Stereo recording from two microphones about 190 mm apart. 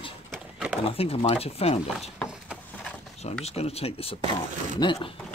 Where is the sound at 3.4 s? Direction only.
30° left (ahead or behind).